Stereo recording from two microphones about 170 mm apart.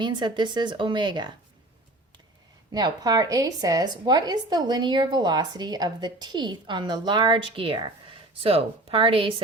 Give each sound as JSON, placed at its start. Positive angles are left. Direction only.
{"t": 0.0, "sound": "a woman's voice", "side_deg": -25}
{"t": 2.7, "sound": "a woman's voice", "side_deg": -25}